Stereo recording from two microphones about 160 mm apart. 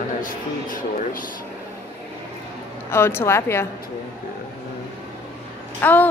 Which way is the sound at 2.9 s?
15° left (ahead or behind).